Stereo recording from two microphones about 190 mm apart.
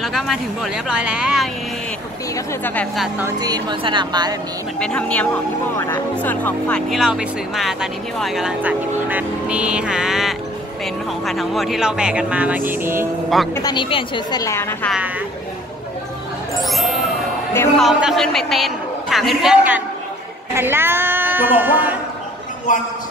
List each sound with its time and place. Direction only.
0.0 s speech: centre (ahead or behind)
2.3 s a woman's voice: 10° left (ahead or behind)
3.2 s speech: 15° right (ahead or behind)
4.7 s speech: 5° left (ahead or behind); by 13.1 s 10° right (ahead or behind)
13.6 s a woman's voice: 20° left (ahead or behind)
16.5 s a sound: centre (ahead or behind)
17.7 s a woman's voice: centre (ahead or behind)
22.7 s a man's voice: 45° left (ahead or behind)